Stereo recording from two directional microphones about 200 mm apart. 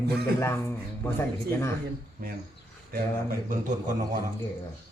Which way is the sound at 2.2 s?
50° right (ahead or behind).